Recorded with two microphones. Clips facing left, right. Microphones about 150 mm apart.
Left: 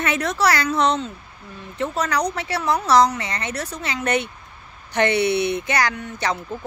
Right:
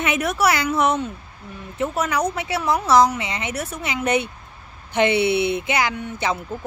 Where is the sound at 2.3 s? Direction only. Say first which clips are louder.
Right 1 dB; 20° right (ahead or behind).